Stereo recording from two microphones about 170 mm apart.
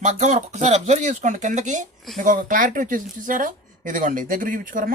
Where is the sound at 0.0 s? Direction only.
45° right (ahead or behind).